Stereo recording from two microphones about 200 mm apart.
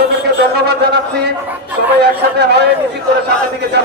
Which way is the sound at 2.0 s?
55° right (ahead or behind).